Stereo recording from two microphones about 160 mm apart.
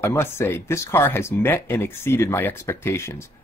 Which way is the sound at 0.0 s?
15° left (ahead or behind).